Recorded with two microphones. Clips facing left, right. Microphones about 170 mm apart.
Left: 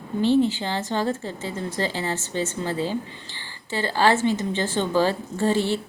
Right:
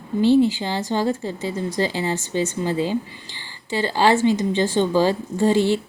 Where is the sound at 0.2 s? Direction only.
10° right (ahead or behind).